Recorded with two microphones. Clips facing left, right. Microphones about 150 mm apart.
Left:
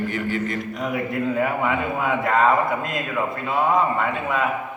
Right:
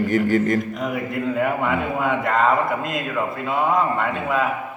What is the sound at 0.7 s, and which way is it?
A man's voice, centre (ahead or behind).